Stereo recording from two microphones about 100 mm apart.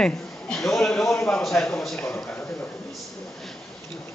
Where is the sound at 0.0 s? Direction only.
5° left (ahead or behind).